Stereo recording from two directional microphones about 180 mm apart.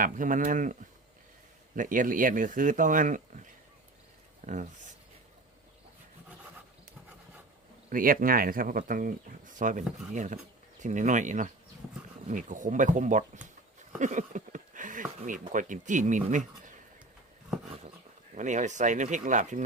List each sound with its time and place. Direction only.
0.0 s speech: 45° right (ahead or behind)
7.9 s speech: 50° right (ahead or behind)
14.0 s a sound: 45° right (ahead or behind)
15.2 s speech: 45° right (ahead or behind)
18.3 s speech: 45° right (ahead or behind)